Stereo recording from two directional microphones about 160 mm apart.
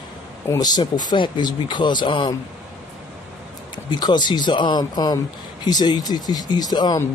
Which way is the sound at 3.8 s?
25° left (ahead or behind).